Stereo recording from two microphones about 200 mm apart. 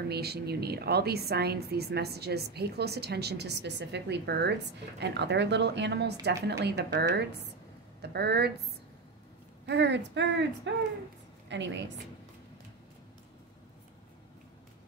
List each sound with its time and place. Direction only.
0.1 s a woman's voice: 55° right (ahead or behind)